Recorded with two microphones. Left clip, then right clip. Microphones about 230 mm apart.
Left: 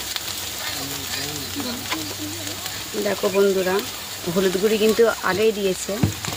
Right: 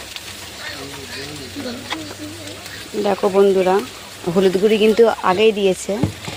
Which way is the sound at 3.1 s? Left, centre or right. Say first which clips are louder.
Right 5 dB; centre.